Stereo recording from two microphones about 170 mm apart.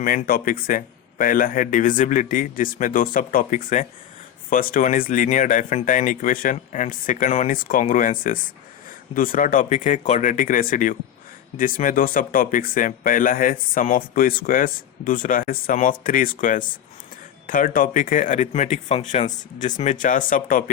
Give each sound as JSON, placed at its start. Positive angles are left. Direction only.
{"t": 0.3, "sound": "speech", "side_deg": 60}